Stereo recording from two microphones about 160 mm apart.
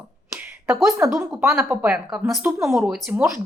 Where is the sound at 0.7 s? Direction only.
5° right (ahead or behind).